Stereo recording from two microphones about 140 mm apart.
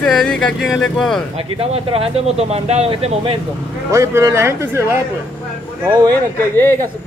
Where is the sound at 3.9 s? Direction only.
20° right (ahead or behind).